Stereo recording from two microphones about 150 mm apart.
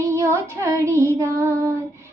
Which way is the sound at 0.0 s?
20° right (ahead or behind).